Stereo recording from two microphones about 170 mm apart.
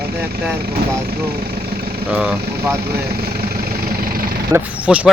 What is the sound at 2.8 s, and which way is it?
Speech, 70° right (ahead or behind).